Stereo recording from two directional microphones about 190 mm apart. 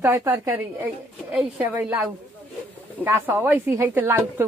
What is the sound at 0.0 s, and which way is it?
Speech, 15° right (ahead or behind).